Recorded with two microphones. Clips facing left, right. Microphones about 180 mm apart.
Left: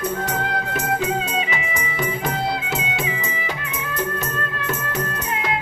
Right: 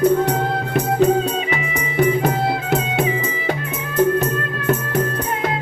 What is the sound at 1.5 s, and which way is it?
Music, 55° right (ahead or behind).